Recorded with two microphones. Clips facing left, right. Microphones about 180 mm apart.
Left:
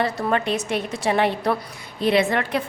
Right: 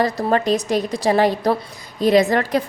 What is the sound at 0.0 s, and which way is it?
A woman's voice, 35° right (ahead or behind).